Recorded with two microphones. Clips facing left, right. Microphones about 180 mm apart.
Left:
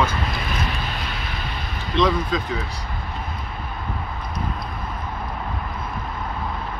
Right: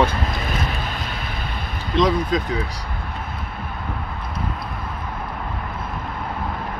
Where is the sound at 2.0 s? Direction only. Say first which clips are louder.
Right 2 dB; 40° right (ahead or behind).